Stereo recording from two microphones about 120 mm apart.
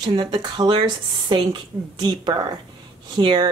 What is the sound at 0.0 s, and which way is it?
Speech, 40° right (ahead or behind).